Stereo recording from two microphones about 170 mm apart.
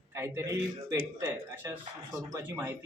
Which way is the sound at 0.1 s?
15° right (ahead or behind).